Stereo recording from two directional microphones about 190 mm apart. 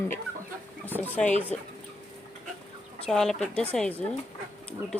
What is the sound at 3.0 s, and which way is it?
Speech, centre (ahead or behind).